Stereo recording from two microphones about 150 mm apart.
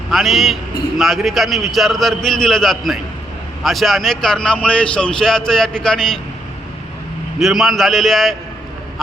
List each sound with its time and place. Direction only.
0.1 s a man's voice: centre (ahead or behind)
7.3 s a man's voice: centre (ahead or behind)